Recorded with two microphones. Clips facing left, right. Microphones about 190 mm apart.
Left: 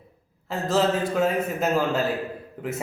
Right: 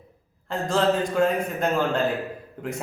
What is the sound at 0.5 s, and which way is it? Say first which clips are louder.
Speech: even; 5° left (ahead or behind).